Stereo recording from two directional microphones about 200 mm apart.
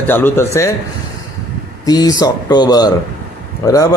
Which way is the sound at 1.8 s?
20° left (ahead or behind).